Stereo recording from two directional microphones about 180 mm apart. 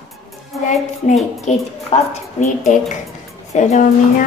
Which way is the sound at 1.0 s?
40° left (ahead or behind).